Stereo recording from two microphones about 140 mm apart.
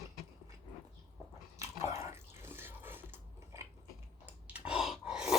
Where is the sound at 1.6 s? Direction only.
20° right (ahead or behind).